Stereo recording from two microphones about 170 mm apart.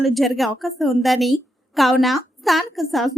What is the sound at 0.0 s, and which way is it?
A woman's voice, centre (ahead or behind).